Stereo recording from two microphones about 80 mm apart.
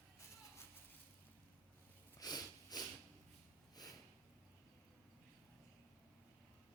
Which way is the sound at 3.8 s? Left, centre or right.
Left.